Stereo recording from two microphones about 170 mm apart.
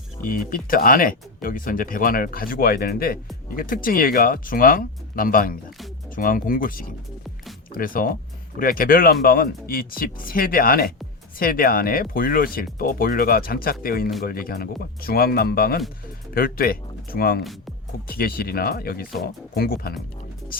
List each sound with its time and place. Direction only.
0.2 s speech: 55° left (ahead or behind)